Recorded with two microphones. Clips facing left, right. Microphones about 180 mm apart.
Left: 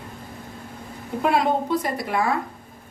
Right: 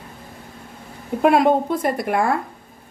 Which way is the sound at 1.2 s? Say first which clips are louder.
Right 6 dB; 55° right (ahead or behind).